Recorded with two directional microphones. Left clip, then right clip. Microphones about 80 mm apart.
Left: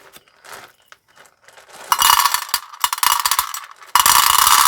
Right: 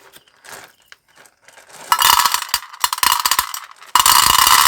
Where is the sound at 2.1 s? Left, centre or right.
Centre.